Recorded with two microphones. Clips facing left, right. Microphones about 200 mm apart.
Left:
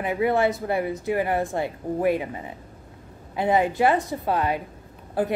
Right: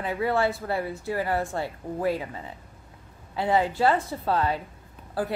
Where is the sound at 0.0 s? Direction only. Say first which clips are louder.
Left 3 dB; 15° left (ahead or behind).